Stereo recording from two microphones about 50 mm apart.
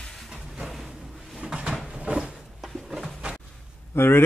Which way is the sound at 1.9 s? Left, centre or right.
Centre.